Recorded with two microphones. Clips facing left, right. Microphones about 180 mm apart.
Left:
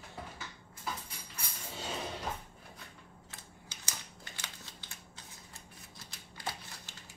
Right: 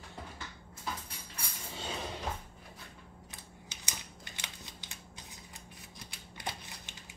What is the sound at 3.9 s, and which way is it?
Scissors, 15° right (ahead or behind).